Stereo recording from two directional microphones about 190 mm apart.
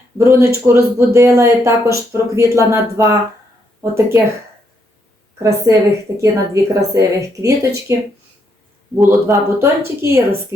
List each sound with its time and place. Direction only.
0.2 s speech: 15° right (ahead or behind)
5.4 s speech: 15° right (ahead or behind)
9.0 s speech: 15° right (ahead or behind)